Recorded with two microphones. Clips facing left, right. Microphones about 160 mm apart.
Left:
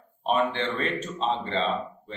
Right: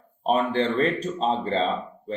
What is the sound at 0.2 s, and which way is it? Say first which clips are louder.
Speech: right 3 dB; 40° right (ahead or behind).